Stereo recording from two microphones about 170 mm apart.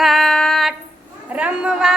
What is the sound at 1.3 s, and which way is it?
Speech, 5° right (ahead or behind).